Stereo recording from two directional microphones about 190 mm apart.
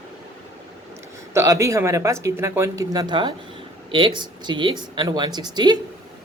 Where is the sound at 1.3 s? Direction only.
15° right (ahead or behind).